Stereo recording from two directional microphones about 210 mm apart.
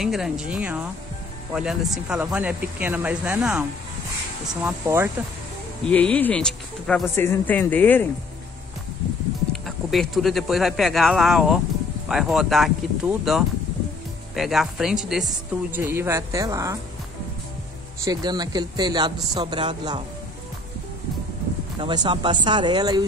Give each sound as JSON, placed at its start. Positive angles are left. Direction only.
{"t": 0.0, "sound": "speech", "side_deg": 0}
{"t": 4.6, "sound": "speech", "side_deg": -10}
{"t": 5.9, "sound": "speech", "side_deg": 5}
{"t": 9.5, "sound": "speech", "side_deg": 0}
{"t": 18.0, "sound": "speech", "side_deg": -20}
{"t": 21.7, "sound": "speech", "side_deg": -20}